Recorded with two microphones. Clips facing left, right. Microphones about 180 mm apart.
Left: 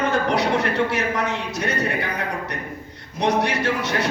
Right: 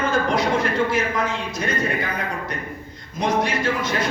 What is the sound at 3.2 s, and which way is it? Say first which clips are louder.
Speech: left 1 dB; 70° left (ahead or behind).